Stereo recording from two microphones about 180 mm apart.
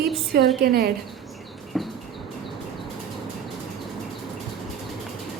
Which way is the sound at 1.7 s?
Centre (ahead or behind).